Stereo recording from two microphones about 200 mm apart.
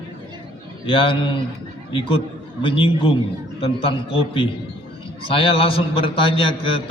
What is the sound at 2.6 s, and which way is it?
A man's voice, 25° left (ahead or behind).